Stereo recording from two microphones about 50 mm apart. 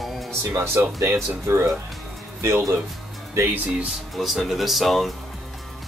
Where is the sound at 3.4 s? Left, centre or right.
Right.